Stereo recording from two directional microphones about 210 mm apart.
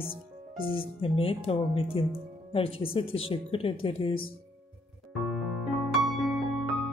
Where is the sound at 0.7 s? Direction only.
25° left (ahead or behind).